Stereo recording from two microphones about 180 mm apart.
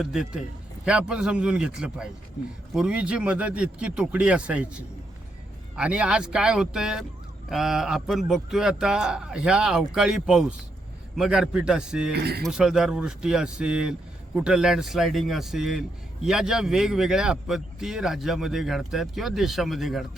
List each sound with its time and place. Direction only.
0.0 s speech: 5° right (ahead or behind)
12.1 s speech: 65° right (ahead or behind)
12.5 s speech: 5° right (ahead or behind)